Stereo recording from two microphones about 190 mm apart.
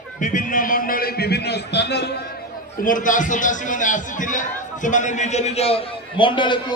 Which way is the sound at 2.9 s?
45° left (ahead or behind).